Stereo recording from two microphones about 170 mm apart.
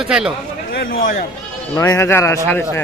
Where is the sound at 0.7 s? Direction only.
55° left (ahead or behind).